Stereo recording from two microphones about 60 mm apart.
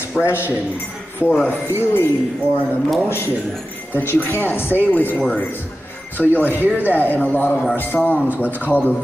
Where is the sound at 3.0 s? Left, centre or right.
Left.